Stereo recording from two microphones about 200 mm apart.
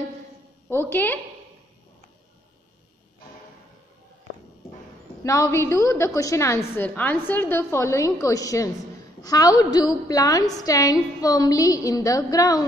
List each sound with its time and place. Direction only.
0.7 s a woman's voice: 10° left (ahead or behind)
5.2 s a woman's voice: 15° left (ahead or behind)